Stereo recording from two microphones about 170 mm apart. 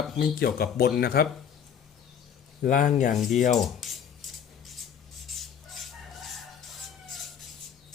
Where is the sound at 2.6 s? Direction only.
50° left (ahead or behind).